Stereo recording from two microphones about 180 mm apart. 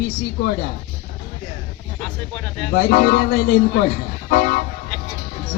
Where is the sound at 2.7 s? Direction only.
55° left (ahead or behind).